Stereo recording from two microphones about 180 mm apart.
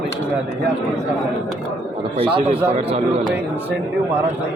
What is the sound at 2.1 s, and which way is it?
Speech, 30° right (ahead or behind).